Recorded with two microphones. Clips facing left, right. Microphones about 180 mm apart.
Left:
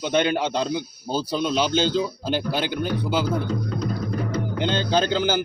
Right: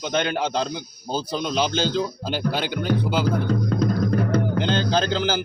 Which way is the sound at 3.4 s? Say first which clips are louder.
Right 4 dB; 70° right (ahead or behind).